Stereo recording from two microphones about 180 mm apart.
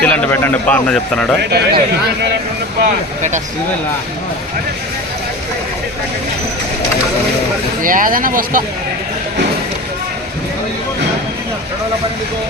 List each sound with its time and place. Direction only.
0.0 s speech: 10° left (ahead or behind)
1.4 s speech: 65° right (ahead or behind)
7.8 s speech: 50° right (ahead or behind)